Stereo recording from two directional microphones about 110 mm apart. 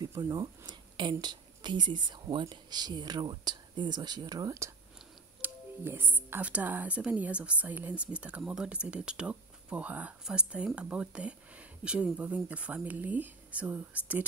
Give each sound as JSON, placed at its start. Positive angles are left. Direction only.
{"t": 0.1, "sound": "a woman's voice", "side_deg": -35}